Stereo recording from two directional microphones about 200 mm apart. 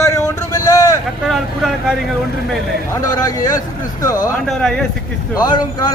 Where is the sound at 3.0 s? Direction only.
20° left (ahead or behind).